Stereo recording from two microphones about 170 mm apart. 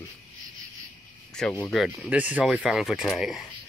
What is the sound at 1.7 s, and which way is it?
Speech, centre (ahead or behind).